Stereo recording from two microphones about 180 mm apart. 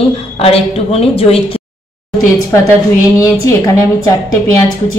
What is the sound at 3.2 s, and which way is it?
Speech, 15° left (ahead or behind).